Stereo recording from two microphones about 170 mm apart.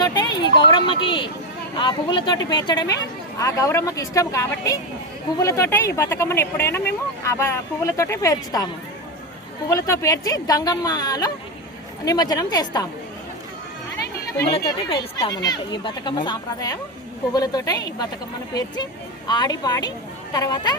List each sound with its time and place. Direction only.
0.0 s speech: 25° left (ahead or behind)
14.5 s speech: 30° left (ahead or behind)
19.3 s speech: 25° left (ahead or behind)